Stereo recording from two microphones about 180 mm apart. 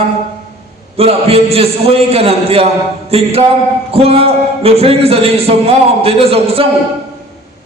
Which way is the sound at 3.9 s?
35° right (ahead or behind).